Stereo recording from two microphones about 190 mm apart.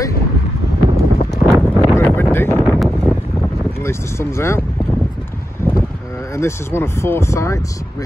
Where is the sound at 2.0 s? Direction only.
10° left (ahead or behind).